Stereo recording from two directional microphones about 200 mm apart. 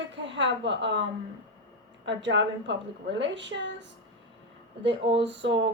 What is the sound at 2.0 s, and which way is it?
A woman's voice, 65° right (ahead or behind).